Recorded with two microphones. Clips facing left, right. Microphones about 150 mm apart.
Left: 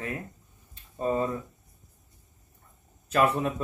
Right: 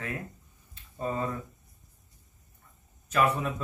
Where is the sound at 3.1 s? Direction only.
35° left (ahead or behind).